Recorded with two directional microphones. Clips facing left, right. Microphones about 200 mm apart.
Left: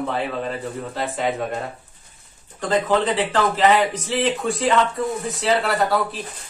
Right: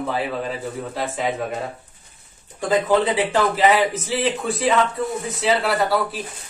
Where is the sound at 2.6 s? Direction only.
10° right (ahead or behind).